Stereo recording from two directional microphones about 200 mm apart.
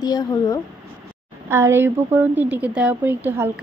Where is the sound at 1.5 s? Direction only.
10° right (ahead or behind).